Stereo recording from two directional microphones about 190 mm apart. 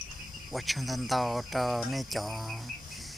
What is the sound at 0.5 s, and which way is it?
Speech, centre (ahead or behind).